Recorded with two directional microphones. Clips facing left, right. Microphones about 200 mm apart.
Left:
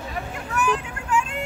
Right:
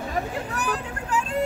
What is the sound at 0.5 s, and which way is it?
Vehicle, 35° right (ahead or behind).